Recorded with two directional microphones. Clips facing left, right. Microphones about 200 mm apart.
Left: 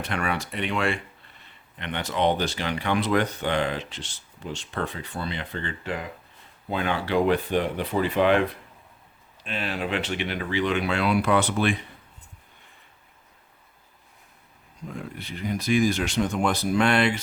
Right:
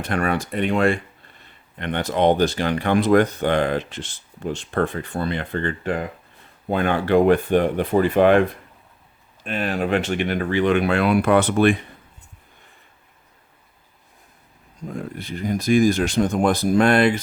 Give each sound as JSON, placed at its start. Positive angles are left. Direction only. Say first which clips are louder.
{"t": 0.0, "sound": "speech", "louder": "right 6 dB", "side_deg": -50}
{"t": 14.8, "sound": "speech", "louder": "right 6 dB", "side_deg": -45}